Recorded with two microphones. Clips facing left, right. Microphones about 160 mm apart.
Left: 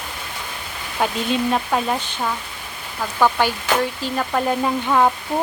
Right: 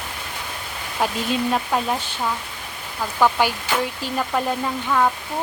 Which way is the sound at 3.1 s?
5° right (ahead or behind).